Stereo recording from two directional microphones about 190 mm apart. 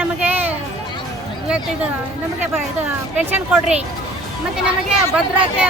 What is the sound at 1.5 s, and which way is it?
Speech, 5° right (ahead or behind).